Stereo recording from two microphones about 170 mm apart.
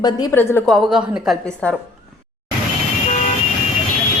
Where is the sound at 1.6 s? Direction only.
5° left (ahead or behind).